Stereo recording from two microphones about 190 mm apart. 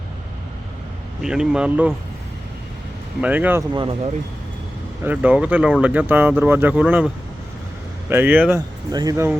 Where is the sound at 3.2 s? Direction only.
10° right (ahead or behind).